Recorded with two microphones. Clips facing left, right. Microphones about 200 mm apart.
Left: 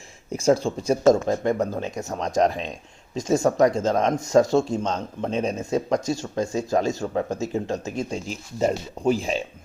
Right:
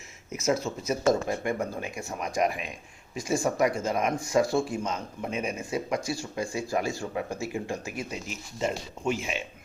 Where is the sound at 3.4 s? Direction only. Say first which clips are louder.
Left 7 dB; 40° left (ahead or behind).